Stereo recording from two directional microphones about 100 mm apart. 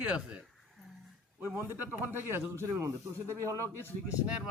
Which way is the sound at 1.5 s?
15° right (ahead or behind).